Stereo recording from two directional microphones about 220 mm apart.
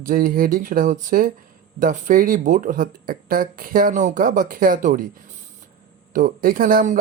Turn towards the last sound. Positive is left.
turn(degrees=-40)  # may be behind; listen again after turning